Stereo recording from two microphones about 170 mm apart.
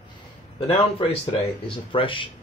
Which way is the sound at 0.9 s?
35° left (ahead or behind).